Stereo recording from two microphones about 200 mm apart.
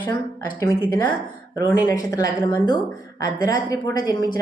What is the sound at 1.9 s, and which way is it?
A woman's voice, 15° left (ahead or behind).